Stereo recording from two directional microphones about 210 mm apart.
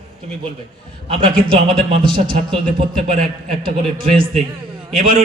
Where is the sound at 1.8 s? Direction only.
25° right (ahead or behind).